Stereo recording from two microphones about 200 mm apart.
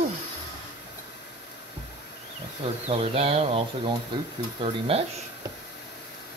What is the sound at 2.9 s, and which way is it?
Speech, 30° right (ahead or behind).